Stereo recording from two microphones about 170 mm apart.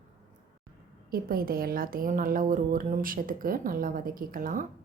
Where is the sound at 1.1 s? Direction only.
60° right (ahead or behind).